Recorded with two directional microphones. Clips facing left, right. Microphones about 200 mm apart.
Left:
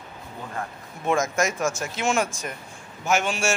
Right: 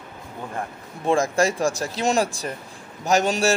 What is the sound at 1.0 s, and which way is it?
A man's voice, 30° right (ahead or behind).